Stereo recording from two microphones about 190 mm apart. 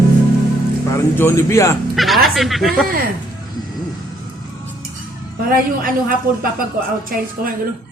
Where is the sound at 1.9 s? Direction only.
Centre (ahead or behind).